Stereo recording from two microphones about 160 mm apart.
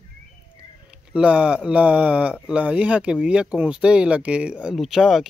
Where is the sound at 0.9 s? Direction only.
5° right (ahead or behind).